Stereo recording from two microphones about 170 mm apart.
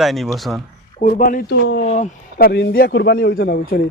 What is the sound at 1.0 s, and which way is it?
A man's voice, 55° left (ahead or behind).